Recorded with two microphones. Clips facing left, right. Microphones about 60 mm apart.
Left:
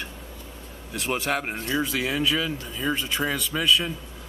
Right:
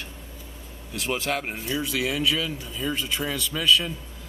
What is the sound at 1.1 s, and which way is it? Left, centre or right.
Speech, centre.